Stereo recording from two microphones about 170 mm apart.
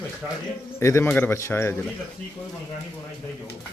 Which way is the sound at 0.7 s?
15° left (ahead or behind).